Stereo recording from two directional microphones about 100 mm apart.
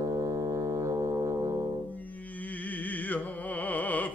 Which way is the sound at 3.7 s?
15° left (ahead or behind).